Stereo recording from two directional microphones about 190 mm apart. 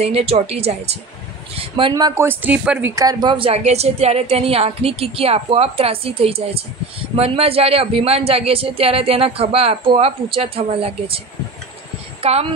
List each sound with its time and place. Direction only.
0.0 s speech: 30° right (ahead or behind); by 2.9 s 5° right (ahead or behind)
3.0 s speech: 20° right (ahead or behind)
12.2 s speech: 35° right (ahead or behind)